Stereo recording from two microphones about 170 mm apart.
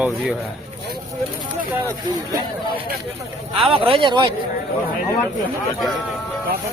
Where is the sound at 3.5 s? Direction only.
30° right (ahead or behind).